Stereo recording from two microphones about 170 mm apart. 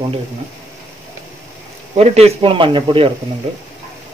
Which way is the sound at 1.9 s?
35° right (ahead or behind).